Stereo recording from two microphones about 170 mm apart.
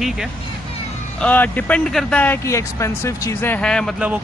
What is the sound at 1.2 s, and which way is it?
Speech, 10° left (ahead or behind).